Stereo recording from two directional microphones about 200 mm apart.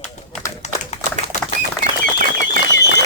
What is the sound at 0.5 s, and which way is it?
Tap, 35° left (ahead or behind).